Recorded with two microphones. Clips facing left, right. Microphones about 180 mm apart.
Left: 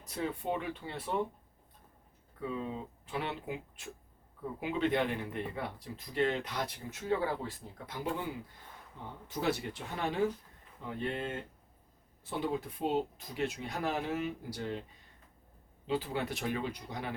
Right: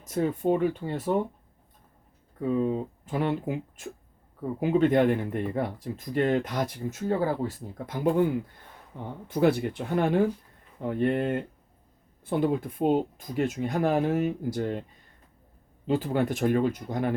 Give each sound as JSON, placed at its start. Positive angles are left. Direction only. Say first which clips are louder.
{"t": 0.0, "sound": "speech", "louder": "right 10 dB", "side_deg": -45}
{"t": 2.4, "sound": "speech", "louder": "right 11 dB", "side_deg": -45}
{"t": 15.9, "sound": "speech", "louder": "right 8 dB", "side_deg": -50}